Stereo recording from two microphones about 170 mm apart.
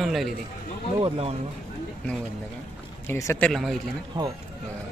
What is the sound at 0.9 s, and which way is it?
Speech, 30° right (ahead or behind).